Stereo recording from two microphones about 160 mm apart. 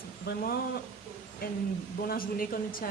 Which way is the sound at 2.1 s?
65° left (ahead or behind).